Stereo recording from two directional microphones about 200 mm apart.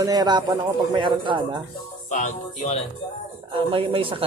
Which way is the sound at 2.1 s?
35° left (ahead or behind).